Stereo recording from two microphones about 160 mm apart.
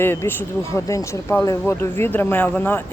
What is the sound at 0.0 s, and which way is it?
Speech, 15° left (ahead or behind).